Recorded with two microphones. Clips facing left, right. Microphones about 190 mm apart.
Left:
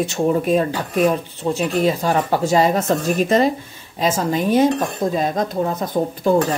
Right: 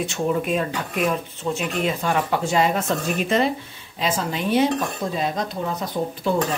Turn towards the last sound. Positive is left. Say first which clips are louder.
# left 5 dB
turn(degrees=45)  # may be behind; listen again after turning